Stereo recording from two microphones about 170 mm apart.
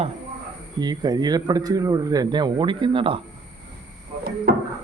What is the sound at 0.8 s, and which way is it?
Speech, 25° right (ahead or behind).